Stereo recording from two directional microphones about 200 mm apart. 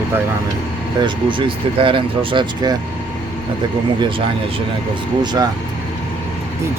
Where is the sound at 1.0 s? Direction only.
25° right (ahead or behind).